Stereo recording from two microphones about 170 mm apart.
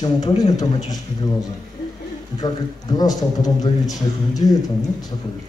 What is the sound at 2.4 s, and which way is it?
A man's voice, 25° left (ahead or behind).